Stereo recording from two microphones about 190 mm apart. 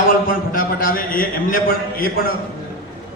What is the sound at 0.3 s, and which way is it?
A man's voice, 45° left (ahead or behind).